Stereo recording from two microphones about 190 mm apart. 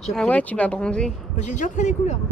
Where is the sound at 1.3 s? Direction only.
40° left (ahead or behind).